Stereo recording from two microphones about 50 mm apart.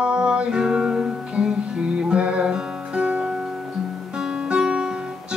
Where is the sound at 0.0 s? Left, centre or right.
Centre.